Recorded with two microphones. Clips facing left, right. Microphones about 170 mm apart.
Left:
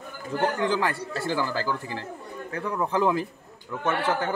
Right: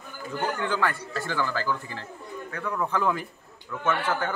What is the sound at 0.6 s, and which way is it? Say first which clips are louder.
A man's voice: left 2 dB; 30° left (ahead or behind).